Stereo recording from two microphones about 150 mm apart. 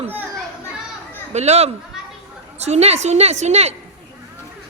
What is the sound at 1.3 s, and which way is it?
A woman's voice, 45° right (ahead or behind).